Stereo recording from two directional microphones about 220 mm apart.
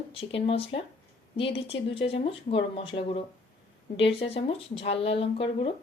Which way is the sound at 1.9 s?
25° left (ahead or behind).